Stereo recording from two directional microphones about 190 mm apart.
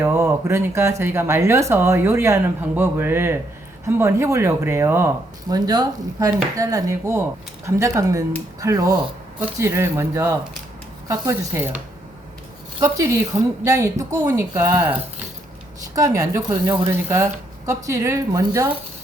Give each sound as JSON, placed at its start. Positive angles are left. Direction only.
{"t": 0.0, "sound": "speech", "side_deg": -15}
{"t": 12.8, "sound": "speech", "side_deg": -15}
{"t": 16.0, "sound": "speech", "side_deg": -20}